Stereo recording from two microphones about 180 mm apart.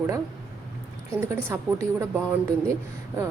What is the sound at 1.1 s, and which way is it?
Speech, 15° right (ahead or behind).